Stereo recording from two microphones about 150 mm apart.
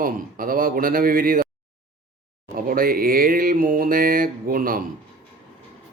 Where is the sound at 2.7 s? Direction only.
70° right (ahead or behind).